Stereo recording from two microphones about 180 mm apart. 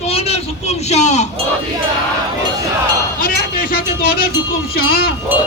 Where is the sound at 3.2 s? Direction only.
55° left (ahead or behind).